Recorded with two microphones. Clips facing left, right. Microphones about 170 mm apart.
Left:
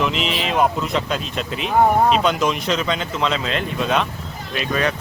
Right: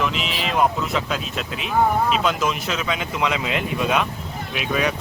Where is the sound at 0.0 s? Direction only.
Centre (ahead or behind).